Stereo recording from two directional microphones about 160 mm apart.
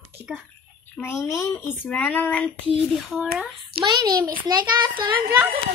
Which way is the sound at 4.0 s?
25° right (ahead or behind).